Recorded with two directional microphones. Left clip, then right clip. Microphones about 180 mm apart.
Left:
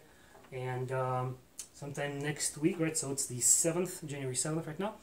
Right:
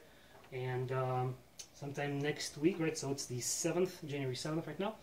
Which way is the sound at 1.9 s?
20° left (ahead or behind).